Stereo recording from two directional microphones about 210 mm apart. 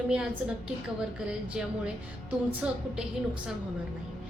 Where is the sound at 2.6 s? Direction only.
5° right (ahead or behind).